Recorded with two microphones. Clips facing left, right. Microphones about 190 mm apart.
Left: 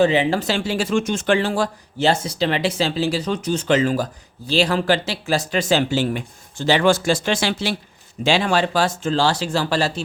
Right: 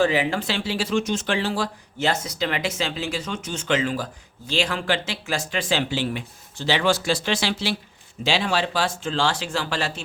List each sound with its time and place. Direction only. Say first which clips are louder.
0.0 s speech: left 4 dB; 25° left (ahead or behind)
0.3 s speech: left 4 dB; 45° left (ahead or behind)
2.0 s speech: left 5 dB; 30° left (ahead or behind)